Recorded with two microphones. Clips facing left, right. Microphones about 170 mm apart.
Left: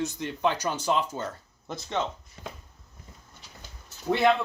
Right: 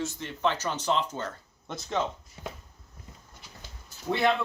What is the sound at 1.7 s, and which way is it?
Speech, centre (ahead or behind).